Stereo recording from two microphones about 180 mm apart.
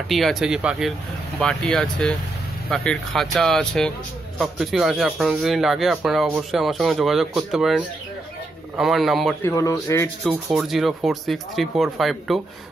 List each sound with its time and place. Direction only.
0.1 s speech: centre (ahead or behind)
9.4 s a man's voice: 15° left (ahead or behind)
10.3 s speech: centre (ahead or behind)